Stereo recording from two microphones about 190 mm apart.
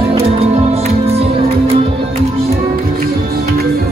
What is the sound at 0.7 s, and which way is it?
Music, 30° right (ahead or behind).